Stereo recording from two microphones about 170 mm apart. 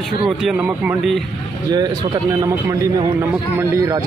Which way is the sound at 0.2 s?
5° right (ahead or behind).